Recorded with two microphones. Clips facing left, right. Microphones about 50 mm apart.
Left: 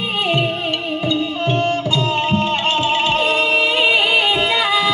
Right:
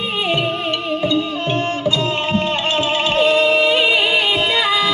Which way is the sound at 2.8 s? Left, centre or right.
Left.